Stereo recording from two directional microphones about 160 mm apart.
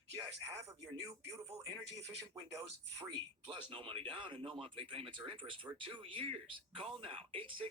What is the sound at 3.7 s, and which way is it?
Speech, 35° right (ahead or behind).